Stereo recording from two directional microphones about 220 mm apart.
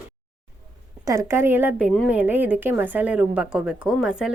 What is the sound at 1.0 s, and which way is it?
A woman's voice, 15° right (ahead or behind).